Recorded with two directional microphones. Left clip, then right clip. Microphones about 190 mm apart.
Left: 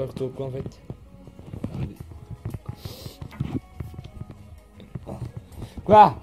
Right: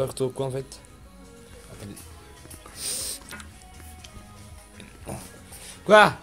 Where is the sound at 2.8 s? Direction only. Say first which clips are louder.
Right 10 dB; 10° left (ahead or behind).